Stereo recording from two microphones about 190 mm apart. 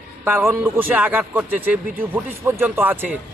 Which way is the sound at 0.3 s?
10° right (ahead or behind).